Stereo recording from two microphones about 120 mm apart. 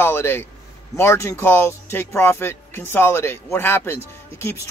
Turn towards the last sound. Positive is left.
turn(degrees=20)  # may be behind; listen again after turning